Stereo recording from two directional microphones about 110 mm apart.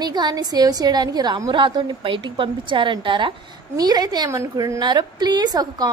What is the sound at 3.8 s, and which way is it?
A woman's voice, 35° right (ahead or behind).